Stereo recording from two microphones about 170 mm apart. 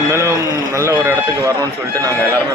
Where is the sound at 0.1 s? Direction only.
15° right (ahead or behind).